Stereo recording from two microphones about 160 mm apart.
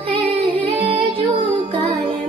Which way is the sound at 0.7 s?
35° right (ahead or behind).